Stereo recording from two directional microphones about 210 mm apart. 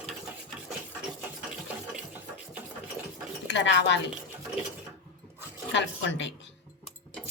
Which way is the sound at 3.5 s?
60° left (ahead or behind).